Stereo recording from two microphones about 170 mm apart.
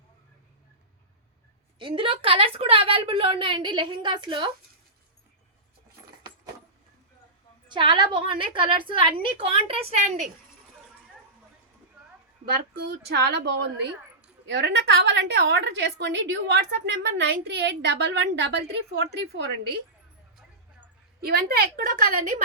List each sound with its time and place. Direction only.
1.8 s a woman's voice: 30° right (ahead or behind)
7.7 s a woman's voice: 30° right (ahead or behind)
12.5 s a woman's voice: 70° right (ahead or behind)
21.2 s a woman's voice: 65° right (ahead or behind)